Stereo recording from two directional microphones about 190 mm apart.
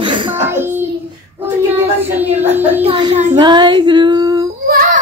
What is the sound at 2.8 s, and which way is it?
Female singing, 25° right (ahead or behind).